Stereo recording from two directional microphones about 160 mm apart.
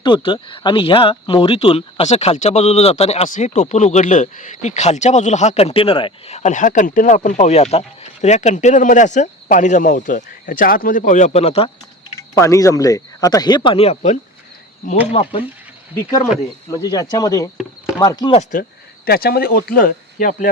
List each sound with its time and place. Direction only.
0.0 s speech: 30° left (ahead or behind)
12.3 s speech: 20° left (ahead or behind); by 15.4 s 40° left (ahead or behind)
16.6 s speech: 25° left (ahead or behind)
17.6 s chop: 5° right (ahead or behind)
18.0 s speech: 25° left (ahead or behind)
18.5 s speech: 55° left (ahead or behind)
19.0 s speech: 75° left (ahead or behind)